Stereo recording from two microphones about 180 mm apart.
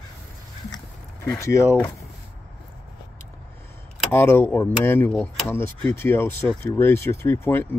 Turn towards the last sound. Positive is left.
turn(degrees=10)  # may be behind; listen again after turning